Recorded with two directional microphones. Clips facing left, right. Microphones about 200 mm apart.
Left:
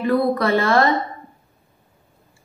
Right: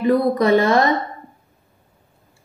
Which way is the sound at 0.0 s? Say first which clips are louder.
Right 2 dB; 20° right (ahead or behind).